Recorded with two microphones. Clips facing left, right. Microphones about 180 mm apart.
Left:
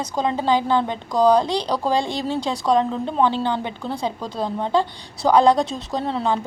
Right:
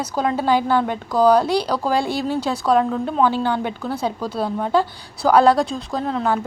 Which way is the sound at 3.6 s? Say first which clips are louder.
Right 3 dB; 20° left (ahead or behind).